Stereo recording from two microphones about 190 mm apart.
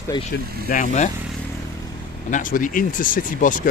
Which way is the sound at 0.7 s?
45° left (ahead or behind).